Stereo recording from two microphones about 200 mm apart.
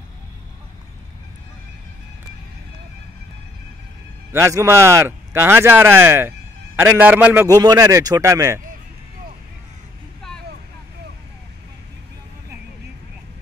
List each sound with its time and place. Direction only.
4.3 s speech: 15° right (ahead or behind)